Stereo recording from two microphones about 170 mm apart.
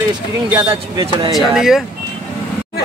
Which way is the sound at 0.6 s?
25° right (ahead or behind).